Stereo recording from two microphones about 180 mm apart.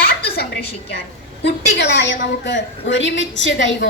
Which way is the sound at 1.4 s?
70° left (ahead or behind).